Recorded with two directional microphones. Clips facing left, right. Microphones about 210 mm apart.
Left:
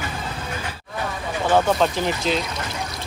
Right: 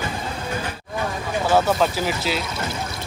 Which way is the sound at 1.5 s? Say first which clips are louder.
Left 1 dB; 5° right (ahead or behind).